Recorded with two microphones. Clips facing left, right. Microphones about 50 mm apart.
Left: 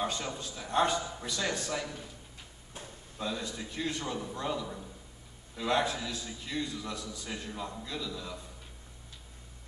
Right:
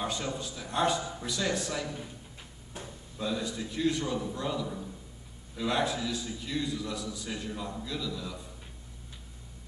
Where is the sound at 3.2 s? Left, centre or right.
Centre.